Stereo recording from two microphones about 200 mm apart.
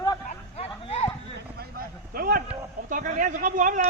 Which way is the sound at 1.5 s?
45° right (ahead or behind).